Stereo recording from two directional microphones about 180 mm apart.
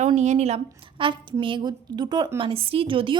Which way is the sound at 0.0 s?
40° right (ahead or behind).